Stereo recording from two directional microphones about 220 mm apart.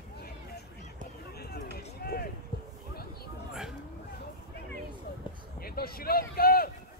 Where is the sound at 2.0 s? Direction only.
45° left (ahead or behind).